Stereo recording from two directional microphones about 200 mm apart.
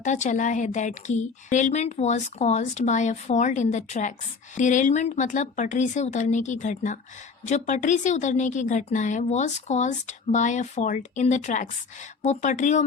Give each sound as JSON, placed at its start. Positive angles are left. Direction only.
{"t": 0.0, "sound": "a woman's voice", "side_deg": 35}